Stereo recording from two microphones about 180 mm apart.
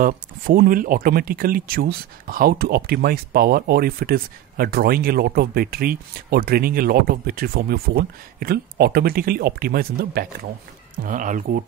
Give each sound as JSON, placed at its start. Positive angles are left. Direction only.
{"t": 0.0, "sound": "speech", "side_deg": -50}